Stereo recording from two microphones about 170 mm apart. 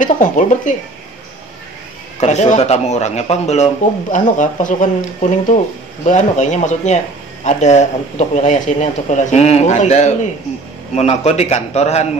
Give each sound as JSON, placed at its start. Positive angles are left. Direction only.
{"t": 0.0, "sound": "speech", "side_deg": 50}
{"t": 2.1, "sound": "speech", "side_deg": 45}
{"t": 6.0, "sound": "a man's voice", "side_deg": 45}